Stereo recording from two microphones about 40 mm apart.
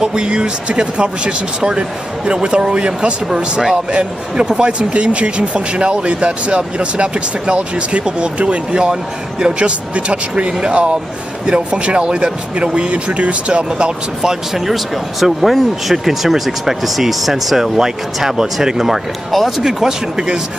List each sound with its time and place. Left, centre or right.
0.0 s a man's voice: centre
13.7 s a man's voice: right
14.5 s speech: centre